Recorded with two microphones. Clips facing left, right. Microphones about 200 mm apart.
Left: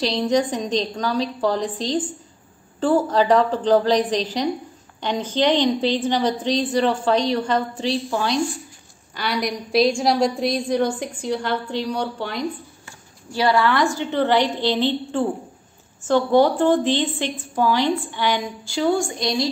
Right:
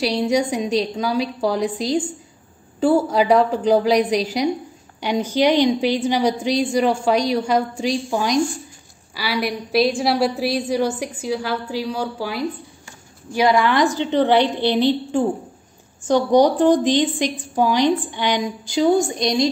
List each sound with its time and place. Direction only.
0.0 s a woman's voice: 10° right (ahead or behind)
13.3 s a woman's voice: 15° right (ahead or behind)